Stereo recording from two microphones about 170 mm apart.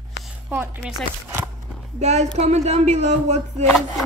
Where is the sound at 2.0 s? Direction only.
40° right (ahead or behind).